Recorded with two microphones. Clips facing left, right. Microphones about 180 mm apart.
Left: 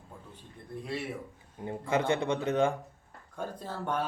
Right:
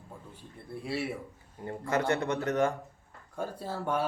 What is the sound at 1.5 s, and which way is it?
Speech, 20° left (ahead or behind).